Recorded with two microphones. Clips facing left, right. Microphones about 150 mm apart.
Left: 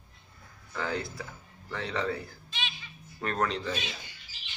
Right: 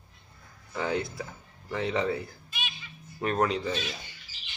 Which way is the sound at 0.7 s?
20° right (ahead or behind).